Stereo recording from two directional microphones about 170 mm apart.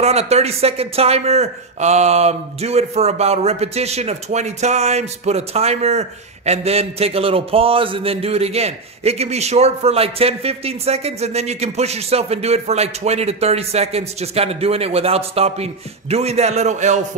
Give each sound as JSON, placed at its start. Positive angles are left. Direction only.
{"t": 0.0, "sound": "speech", "side_deg": -40}